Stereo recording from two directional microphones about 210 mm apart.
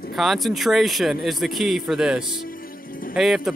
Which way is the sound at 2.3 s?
45° left (ahead or behind).